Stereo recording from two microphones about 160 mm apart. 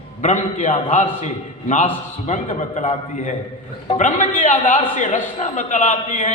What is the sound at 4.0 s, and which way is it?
A man's voice, 55° left (ahead or behind).